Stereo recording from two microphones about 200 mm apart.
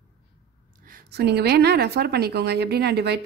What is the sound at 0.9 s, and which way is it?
A woman's voice, 50° right (ahead or behind).